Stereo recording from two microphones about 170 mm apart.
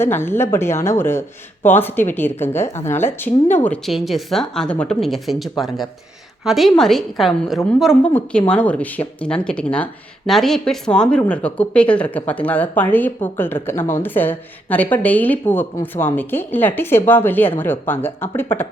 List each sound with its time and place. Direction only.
0.0 s a woman's voice: 15° left (ahead or behind)